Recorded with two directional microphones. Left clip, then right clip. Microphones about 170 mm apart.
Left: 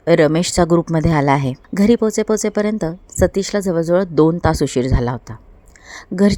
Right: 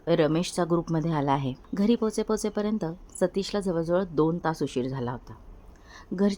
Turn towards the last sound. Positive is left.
turn(degrees=35)  # may be behind; listen again after turning